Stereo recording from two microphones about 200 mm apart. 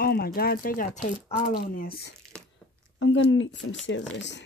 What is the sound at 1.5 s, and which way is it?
Speech, 50° left (ahead or behind).